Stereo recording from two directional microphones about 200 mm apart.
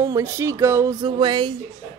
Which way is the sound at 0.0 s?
15° right (ahead or behind).